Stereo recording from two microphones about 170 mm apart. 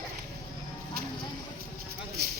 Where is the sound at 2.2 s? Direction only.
65° right (ahead or behind).